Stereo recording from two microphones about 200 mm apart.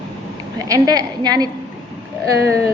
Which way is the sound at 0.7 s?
20° right (ahead or behind).